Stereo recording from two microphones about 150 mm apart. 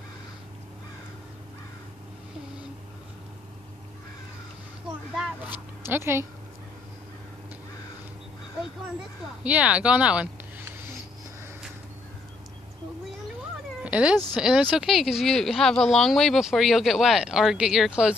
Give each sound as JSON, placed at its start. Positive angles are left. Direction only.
{"t": 5.9, "sound": "speech", "side_deg": -15}
{"t": 9.4, "sound": "speech", "side_deg": -10}
{"t": 13.8, "sound": "cat", "side_deg": -10}
{"t": 14.3, "sound": "speech", "side_deg": -5}